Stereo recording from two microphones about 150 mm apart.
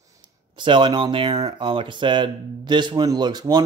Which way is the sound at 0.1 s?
30° right (ahead or behind).